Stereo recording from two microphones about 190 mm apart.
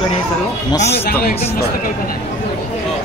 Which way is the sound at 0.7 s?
15° left (ahead or behind).